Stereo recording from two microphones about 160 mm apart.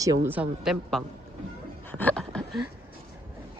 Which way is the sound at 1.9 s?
10° left (ahead or behind).